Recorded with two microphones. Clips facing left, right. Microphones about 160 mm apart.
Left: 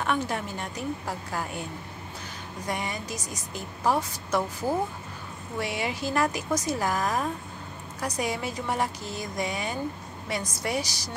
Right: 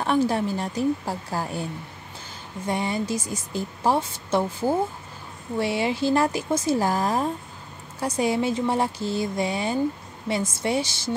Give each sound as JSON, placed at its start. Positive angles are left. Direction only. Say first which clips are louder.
{"t": 0.0, "sound": "a woman's voice", "louder": "right 6 dB", "side_deg": -30}